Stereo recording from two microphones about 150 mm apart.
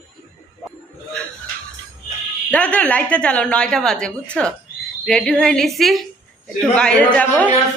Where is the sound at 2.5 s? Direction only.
10° left (ahead or behind).